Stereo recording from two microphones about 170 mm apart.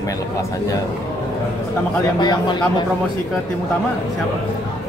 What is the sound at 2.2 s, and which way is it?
Speech, 25° left (ahead or behind).